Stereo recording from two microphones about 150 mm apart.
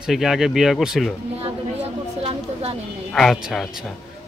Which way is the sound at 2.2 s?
40° right (ahead or behind).